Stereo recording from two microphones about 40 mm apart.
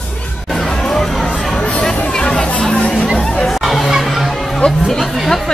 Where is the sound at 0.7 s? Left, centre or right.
Centre.